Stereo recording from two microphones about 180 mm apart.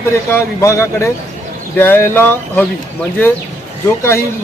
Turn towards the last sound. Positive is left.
turn(degrees=15)  # may be behind; listen again after turning